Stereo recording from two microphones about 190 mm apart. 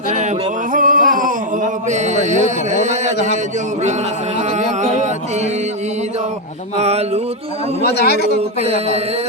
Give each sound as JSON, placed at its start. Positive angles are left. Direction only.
{"t": 0.1, "sound": "a sound", "side_deg": -40}
{"t": 4.4, "sound": "chant", "side_deg": -40}
{"t": 6.7, "sound": "chant", "side_deg": -35}
{"t": 7.9, "sound": "a man's voice", "side_deg": 60}
{"t": 8.5, "sound": "chant", "side_deg": -35}